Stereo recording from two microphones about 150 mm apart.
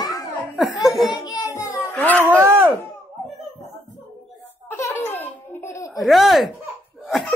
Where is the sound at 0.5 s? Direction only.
Centre (ahead or behind).